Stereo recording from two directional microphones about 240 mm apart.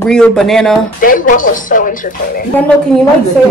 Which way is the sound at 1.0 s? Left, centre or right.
Left.